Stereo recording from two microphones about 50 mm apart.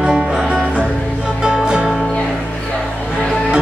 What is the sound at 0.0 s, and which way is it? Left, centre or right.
Music, centre.